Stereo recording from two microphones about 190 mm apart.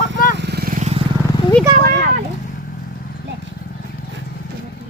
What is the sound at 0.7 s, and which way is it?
Vehicle, 35° right (ahead or behind).